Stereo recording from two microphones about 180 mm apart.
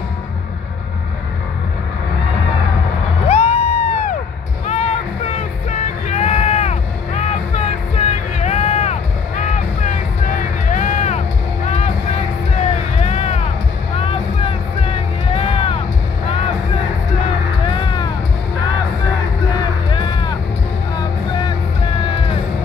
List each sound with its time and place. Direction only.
3.3 s crowd: 35° left (ahead or behind)
4.6 s music: 35° left (ahead or behind)
10.7 s vehicle: 40° left (ahead or behind)
12.9 s a sound: 40° left (ahead or behind)
13.9 s vehicle: 30° left (ahead or behind)
17.6 s vehicle: 25° left (ahead or behind)
19.9 s vehicle: 25° left (ahead or behind)
21.0 s music: 25° left (ahead or behind)